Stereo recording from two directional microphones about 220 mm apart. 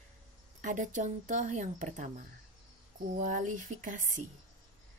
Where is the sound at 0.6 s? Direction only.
35° right (ahead or behind).